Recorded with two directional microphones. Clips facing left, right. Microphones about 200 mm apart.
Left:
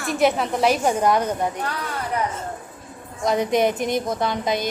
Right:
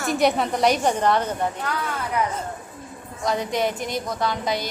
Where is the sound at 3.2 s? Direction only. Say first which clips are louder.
Left 4 dB; 20° left (ahead or behind).